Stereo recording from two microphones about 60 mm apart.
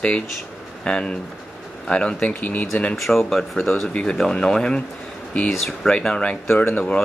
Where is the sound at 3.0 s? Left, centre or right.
Centre.